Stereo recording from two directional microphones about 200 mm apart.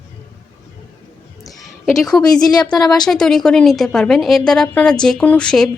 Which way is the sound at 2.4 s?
20° left (ahead or behind).